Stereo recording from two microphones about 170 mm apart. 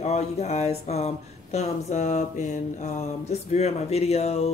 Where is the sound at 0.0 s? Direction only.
40° left (ahead or behind).